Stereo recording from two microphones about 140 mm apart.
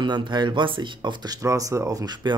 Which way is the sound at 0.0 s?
35° right (ahead or behind).